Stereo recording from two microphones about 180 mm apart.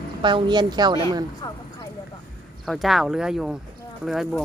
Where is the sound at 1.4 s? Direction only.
25° left (ahead or behind).